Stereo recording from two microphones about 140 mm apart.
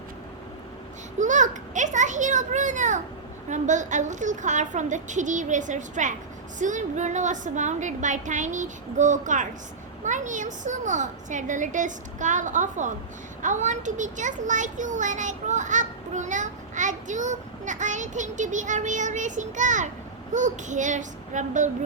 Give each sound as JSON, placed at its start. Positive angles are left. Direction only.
{"t": 1.2, "sound": "a child's voice", "side_deg": -60}